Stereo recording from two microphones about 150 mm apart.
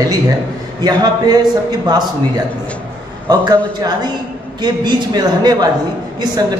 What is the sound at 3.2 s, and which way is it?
Speech, 25° right (ahead or behind).